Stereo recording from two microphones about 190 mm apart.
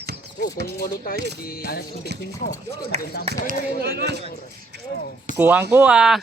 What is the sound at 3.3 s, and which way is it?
Speech, 60° right (ahead or behind).